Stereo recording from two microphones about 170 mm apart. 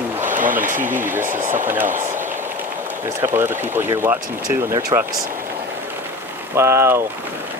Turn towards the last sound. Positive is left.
turn(degrees=-15)  # may be behind; listen again after turning